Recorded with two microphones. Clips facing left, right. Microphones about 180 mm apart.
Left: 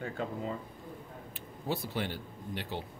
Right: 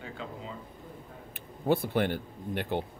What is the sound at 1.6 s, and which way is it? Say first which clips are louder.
Speech: right 8 dB; 55° right (ahead or behind).